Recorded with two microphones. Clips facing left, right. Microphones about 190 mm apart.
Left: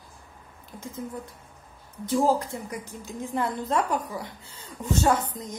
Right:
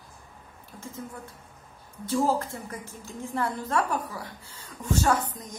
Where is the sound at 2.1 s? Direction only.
15° left (ahead or behind).